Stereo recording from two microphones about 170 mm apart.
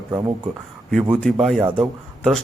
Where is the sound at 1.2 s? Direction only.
5° left (ahead or behind).